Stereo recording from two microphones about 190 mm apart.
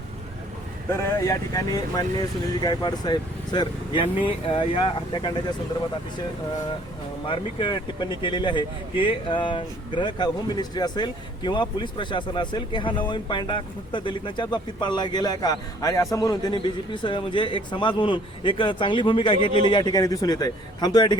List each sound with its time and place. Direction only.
0.9 s speech: 15° left (ahead or behind)
7.3 s speech: 25° left (ahead or behind)